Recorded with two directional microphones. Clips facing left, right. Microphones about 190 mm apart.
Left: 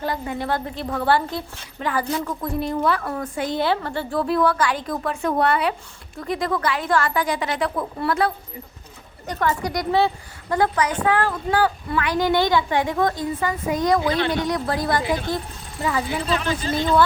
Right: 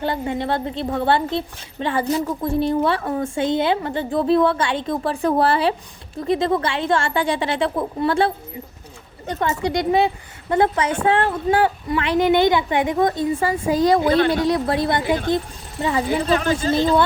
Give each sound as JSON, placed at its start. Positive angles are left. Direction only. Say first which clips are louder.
{"t": 0.0, "sound": "a woman's voice", "louder": "right 3 dB", "side_deg": -25}
{"t": 13.4, "sound": "a woman's voice", "louder": "right 4 dB", "side_deg": -30}
{"t": 16.0, "sound": "speech", "louder": "right 5 dB", "side_deg": -45}